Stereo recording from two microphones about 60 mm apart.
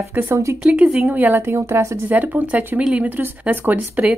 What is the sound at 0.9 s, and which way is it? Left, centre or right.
Speech, right.